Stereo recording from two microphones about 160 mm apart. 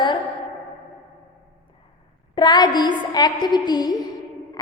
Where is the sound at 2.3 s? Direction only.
25° left (ahead or behind).